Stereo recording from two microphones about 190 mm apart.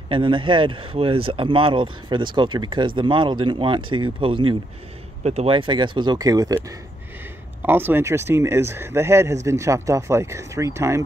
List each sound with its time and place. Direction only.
0.1 s speech: 25° right (ahead or behind)
7.6 s speech: 10° right (ahead or behind)